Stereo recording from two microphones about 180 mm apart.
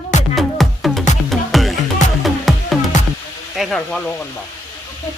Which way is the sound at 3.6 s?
Centre (ahead or behind).